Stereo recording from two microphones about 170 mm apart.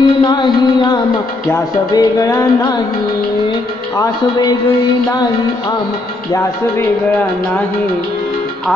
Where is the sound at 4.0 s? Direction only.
20° left (ahead or behind).